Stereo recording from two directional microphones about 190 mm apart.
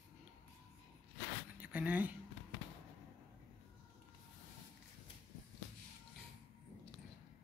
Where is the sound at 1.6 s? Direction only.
5° right (ahead or behind).